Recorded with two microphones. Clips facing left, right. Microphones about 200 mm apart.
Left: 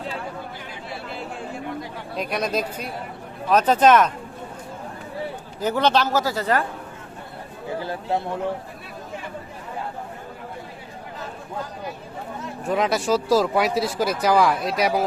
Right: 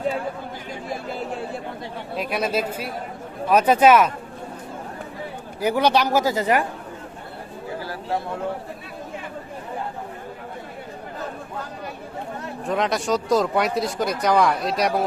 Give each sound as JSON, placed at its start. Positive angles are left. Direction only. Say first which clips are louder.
{"t": 0.7, "sound": "chatter", "louder": "right 4 dB", "side_deg": -40}
{"t": 2.1, "sound": "a man's voice", "louder": "right 1 dB", "side_deg": -5}
{"t": 5.5, "sound": "a man's voice", "louder": "right 1 dB", "side_deg": -10}
{"t": 7.8, "sound": "a sound", "louder": "left 2 dB", "side_deg": 20}
{"t": 12.6, "sound": "speech", "louder": "left 1 dB", "side_deg": 5}